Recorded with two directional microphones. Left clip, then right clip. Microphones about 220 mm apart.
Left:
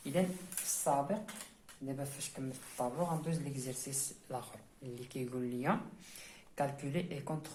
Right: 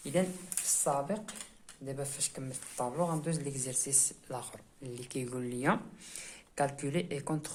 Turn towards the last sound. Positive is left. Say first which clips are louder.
# right 5 dB
turn(degrees=-45)  # may be behind; listen again after turning